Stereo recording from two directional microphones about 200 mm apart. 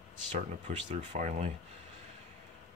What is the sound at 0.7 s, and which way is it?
Speech, 35° right (ahead or behind).